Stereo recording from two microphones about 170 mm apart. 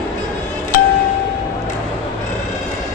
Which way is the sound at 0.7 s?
55° left (ahead or behind).